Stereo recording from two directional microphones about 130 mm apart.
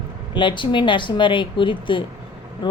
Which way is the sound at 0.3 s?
40° left (ahead or behind).